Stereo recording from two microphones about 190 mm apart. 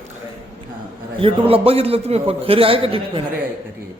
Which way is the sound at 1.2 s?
30° right (ahead or behind).